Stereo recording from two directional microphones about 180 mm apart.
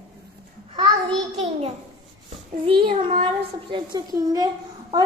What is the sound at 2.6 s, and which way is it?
Child singing, 30° right (ahead or behind).